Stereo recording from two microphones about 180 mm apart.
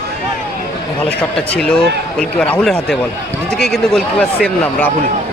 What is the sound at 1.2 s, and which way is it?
Speech, 5° left (ahead or behind).